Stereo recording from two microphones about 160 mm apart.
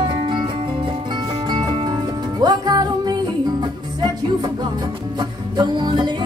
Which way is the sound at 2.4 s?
25° right (ahead or behind).